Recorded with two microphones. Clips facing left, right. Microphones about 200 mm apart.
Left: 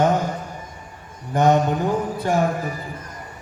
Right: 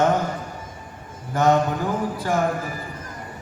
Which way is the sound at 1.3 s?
15° left (ahead or behind).